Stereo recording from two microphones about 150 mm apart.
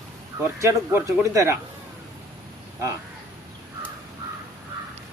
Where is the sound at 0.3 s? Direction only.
20° right (ahead or behind).